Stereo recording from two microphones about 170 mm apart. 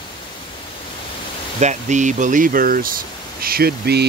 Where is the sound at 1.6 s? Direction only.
45° right (ahead or behind); by 4.0 s 70° right (ahead or behind).